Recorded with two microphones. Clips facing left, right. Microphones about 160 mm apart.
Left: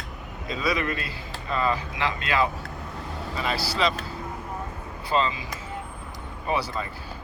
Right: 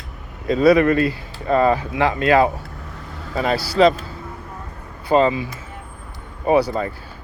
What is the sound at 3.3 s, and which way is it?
Speech, 45° right (ahead or behind).